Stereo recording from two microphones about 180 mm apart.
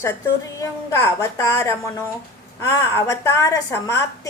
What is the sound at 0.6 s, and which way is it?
A woman's voice, 15° left (ahead or behind).